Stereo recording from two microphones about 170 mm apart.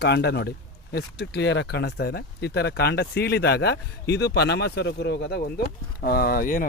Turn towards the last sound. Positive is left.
turn(degrees=55)  # may be behind; listen again after turning